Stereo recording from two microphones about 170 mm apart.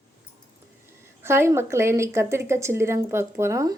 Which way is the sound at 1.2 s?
15° right (ahead or behind).